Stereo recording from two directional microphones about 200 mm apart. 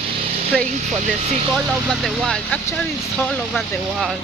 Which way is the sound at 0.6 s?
35° right (ahead or behind).